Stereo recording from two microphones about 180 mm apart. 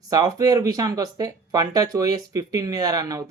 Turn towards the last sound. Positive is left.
turn(degrees=-20)  # may be behind; listen again after turning